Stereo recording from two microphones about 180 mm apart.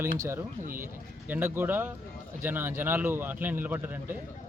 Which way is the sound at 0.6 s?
50° right (ahead or behind).